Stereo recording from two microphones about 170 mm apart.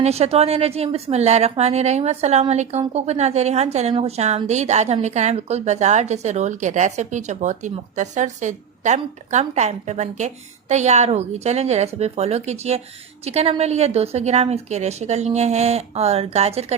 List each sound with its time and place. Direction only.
0.0 s a woman's voice: 40° right (ahead or behind)